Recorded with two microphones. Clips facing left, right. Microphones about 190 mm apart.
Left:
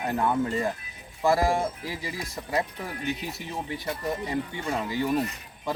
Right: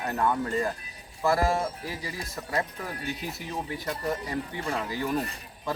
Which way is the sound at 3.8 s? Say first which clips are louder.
Left 1 dB; 20° left (ahead or behind).